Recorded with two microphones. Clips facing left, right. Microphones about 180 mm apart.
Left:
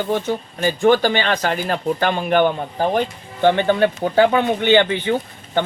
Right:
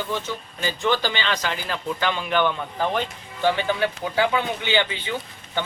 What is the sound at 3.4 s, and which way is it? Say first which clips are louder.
Speech: left 7 dB; 55° left (ahead or behind).